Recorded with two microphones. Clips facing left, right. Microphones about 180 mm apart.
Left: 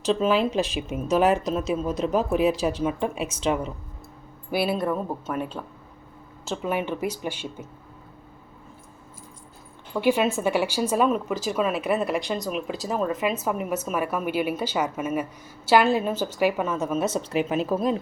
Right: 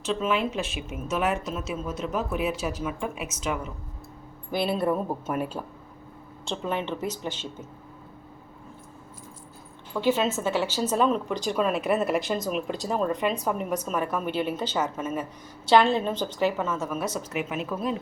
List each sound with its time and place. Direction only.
0.0 s speech: 35° left (ahead or behind)
4.5 s speech: 5° left (ahead or behind)
4.8 s speech: 5° right (ahead or behind)
6.4 s speech: 5° left (ahead or behind)
9.9 s speech: 15° left (ahead or behind); by 17.9 s 35° left (ahead or behind)